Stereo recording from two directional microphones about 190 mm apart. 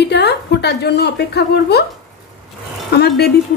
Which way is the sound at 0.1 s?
60° left (ahead or behind).